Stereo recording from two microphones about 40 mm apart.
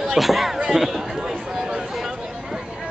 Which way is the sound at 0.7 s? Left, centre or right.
Centre.